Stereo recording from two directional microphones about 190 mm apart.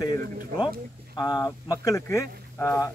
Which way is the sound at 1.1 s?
20° left (ahead or behind).